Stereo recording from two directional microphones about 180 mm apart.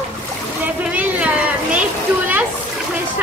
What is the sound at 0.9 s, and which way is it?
Children playing, 10° right (ahead or behind).